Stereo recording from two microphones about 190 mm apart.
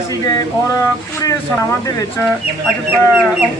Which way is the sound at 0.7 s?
15° left (ahead or behind).